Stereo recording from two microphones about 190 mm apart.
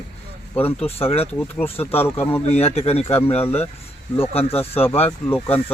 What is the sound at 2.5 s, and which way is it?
Speech, 30° left (ahead or behind).